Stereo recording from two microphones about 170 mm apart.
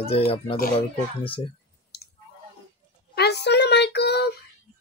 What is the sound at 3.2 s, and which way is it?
Child singing, 80° left.